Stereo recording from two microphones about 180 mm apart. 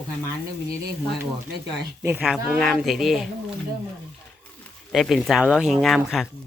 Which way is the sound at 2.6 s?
Centre (ahead or behind).